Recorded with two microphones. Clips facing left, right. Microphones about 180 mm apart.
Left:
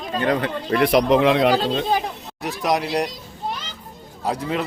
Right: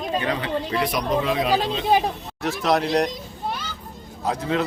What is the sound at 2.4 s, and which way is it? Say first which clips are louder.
Speech: right 1 dB; 15° left (ahead or behind).